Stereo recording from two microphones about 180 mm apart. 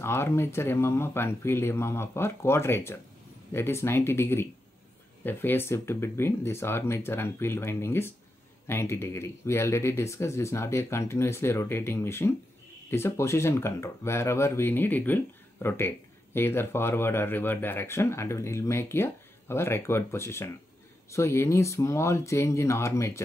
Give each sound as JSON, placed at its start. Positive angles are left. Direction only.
{"t": 0.0, "sound": "speech", "side_deg": 15}